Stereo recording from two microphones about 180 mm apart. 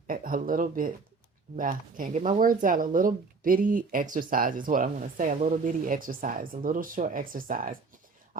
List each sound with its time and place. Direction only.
0.1 s speech: 50° right (ahead or behind)